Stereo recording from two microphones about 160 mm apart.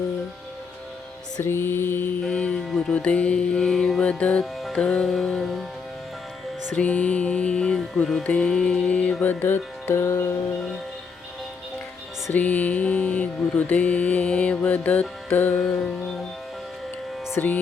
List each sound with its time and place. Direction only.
1.4 s music: 15° left (ahead or behind)
6.7 s music: 10° left (ahead or behind)
12.3 s mantra: 10° left (ahead or behind)
17.3 s speech: 10° left (ahead or behind)